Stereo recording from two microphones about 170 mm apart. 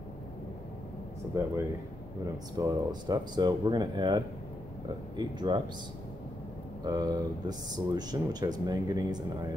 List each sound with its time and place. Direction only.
1.3 s speech: 15° right (ahead or behind)
6.8 s speech: 25° right (ahead or behind)